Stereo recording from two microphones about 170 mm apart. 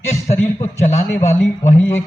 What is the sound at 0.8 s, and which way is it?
Speech, 40° left (ahead or behind).